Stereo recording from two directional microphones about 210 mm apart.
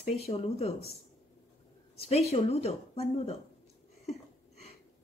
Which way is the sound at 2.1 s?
30° left (ahead or behind).